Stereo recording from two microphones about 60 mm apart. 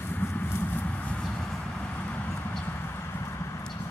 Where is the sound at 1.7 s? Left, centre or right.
Left.